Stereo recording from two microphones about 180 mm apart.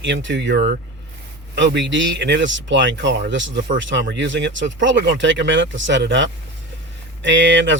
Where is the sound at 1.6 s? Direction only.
85° right.